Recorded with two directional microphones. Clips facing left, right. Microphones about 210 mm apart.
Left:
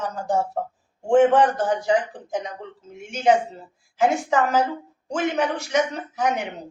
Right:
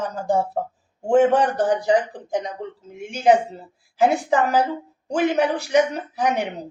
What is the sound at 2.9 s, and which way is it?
A woman's voice, 35° right (ahead or behind).